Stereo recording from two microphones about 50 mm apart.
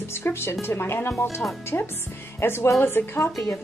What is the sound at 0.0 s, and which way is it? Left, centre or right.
Speech, left.